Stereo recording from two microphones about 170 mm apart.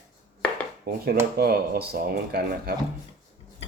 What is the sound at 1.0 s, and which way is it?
Speech, 65° right (ahead or behind).